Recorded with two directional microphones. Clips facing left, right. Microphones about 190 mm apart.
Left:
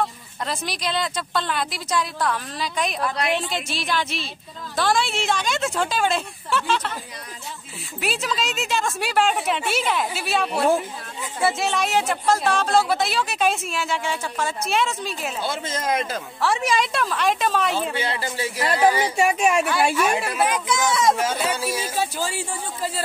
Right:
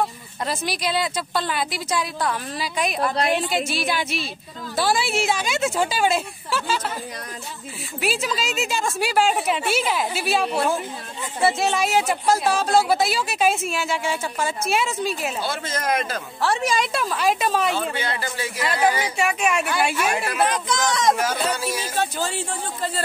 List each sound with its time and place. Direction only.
0.5 s a woman's voice: 5° right (ahead or behind)
8.0 s speech: centre (ahead or behind)
15.4 s speech: 20° left (ahead or behind)
16.3 s speech: centre (ahead or behind)
18.0 s a woman's voice: 30° left (ahead or behind)
19.6 s speech: 5° right (ahead or behind)